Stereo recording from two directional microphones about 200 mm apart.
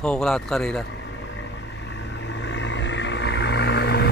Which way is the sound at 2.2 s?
65° left (ahead or behind).